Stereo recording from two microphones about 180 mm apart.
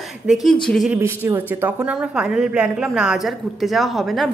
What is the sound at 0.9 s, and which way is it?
Speech, 15° right (ahead or behind).